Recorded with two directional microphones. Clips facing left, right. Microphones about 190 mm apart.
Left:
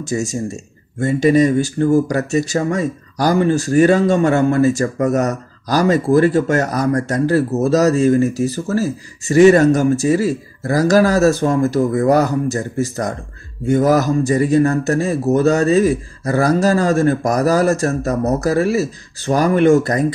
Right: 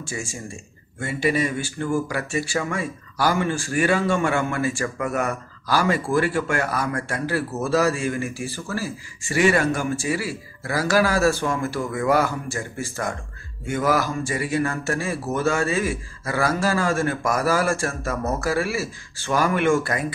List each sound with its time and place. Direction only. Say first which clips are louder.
0.1 s speech: left 13 dB; 40° left (ahead or behind)